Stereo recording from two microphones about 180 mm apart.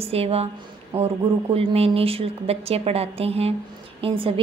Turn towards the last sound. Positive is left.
turn(degrees=-30)  # may be behind; listen again after turning